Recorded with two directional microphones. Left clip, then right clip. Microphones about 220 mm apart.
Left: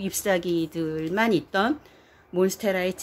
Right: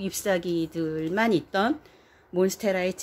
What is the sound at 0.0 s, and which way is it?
Speech, centre (ahead or behind).